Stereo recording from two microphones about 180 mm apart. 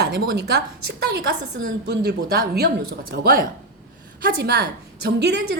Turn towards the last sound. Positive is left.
turn(degrees=-65)  # may be behind; listen again after turning